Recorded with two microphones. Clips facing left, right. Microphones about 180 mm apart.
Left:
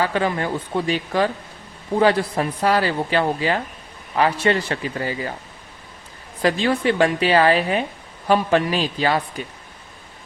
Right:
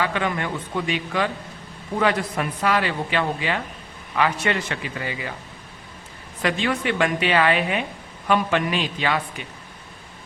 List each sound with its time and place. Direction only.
0.0 s speech: 35° left (ahead or behind)
6.4 s speech: 35° left (ahead or behind)